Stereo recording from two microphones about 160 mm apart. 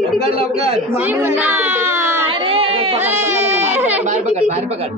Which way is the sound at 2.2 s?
35° right (ahead or behind).